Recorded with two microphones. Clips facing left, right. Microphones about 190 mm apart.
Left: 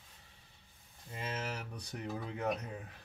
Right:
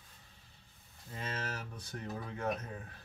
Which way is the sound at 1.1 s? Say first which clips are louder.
Left 1 dB; 15° left (ahead or behind).